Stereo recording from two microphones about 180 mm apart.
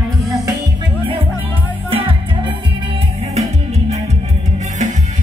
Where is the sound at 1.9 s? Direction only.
30° right (ahead or behind).